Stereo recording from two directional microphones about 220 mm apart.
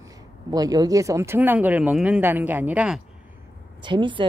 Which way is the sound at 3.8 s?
20° right (ahead or behind).